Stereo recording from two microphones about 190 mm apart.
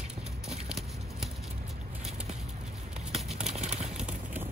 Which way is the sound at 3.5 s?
35° right (ahead or behind).